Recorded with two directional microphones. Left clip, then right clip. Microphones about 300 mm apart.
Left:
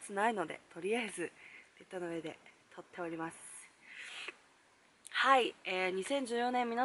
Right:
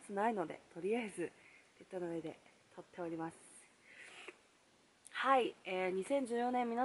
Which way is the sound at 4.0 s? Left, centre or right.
Centre.